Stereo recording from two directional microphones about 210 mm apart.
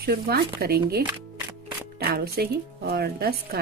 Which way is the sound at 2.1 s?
50° right (ahead or behind).